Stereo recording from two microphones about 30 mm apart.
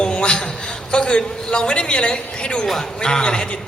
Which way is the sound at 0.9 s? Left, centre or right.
Left.